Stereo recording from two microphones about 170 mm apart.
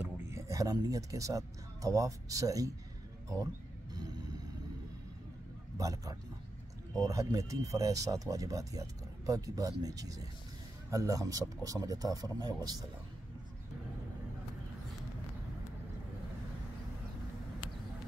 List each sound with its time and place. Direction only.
0.0 s speech: 15° right (ahead or behind)
3.9 s vehicle: 25° right (ahead or behind)
5.8 s speech: 20° right (ahead or behind)